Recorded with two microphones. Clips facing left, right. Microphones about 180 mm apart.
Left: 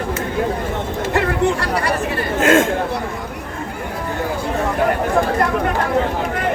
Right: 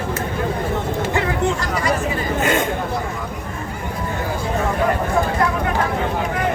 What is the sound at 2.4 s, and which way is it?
Speech, 90° left.